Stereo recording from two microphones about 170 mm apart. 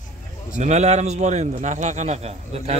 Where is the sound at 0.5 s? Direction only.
40° right (ahead or behind).